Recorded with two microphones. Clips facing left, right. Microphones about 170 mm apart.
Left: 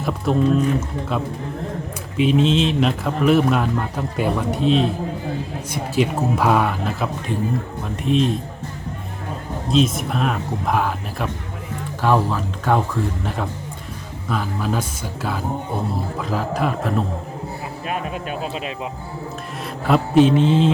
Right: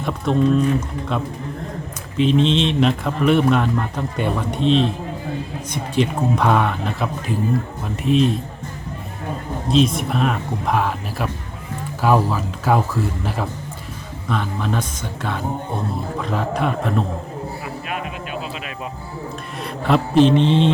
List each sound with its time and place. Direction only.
0.0 s a man's voice: 5° left (ahead or behind)
9.6 s a man's voice: centre (ahead or behind)
17.8 s a sound: 35° left (ahead or behind)
19.6 s mantra: 5° left (ahead or behind)